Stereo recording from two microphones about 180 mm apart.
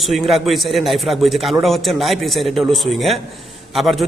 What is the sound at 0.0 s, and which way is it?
A man's voice, centre (ahead or behind).